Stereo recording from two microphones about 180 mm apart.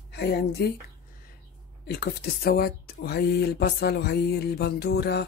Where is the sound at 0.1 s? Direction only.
65° left (ahead or behind).